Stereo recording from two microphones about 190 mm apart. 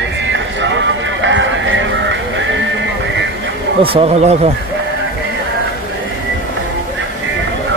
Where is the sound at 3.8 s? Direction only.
30° right (ahead or behind).